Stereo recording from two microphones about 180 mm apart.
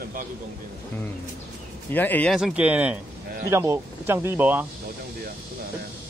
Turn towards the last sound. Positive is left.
turn(degrees=-10)  # may be behind; listen again after turning